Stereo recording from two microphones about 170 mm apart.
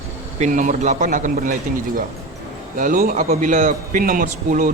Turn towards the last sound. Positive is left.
turn(degrees=-55)  # may be behind; listen again after turning